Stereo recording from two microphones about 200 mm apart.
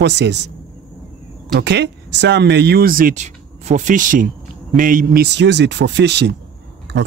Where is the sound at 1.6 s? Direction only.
60° right (ahead or behind).